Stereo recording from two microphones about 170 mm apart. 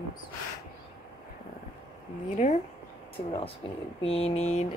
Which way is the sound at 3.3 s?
30° left (ahead or behind).